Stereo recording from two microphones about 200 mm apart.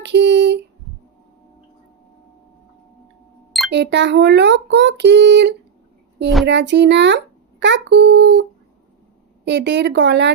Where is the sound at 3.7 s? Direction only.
60° right (ahead or behind).